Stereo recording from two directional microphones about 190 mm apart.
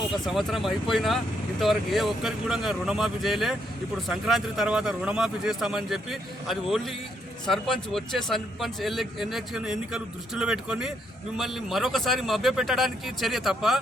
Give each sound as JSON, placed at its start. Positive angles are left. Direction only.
{"t": 0.3, "sound": "a man's voice", "side_deg": 0}